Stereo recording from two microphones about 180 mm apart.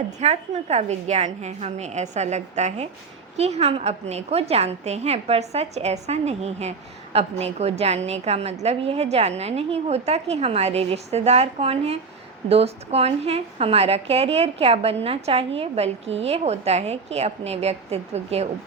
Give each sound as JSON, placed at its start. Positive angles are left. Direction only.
{"t": 0.2, "sound": "a woman's voice", "side_deg": -40}